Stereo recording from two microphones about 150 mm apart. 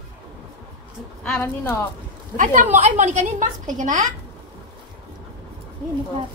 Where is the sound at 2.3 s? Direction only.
60° right (ahead or behind).